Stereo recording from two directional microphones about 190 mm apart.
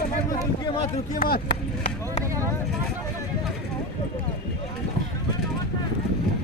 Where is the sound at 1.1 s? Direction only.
50° left (ahead or behind).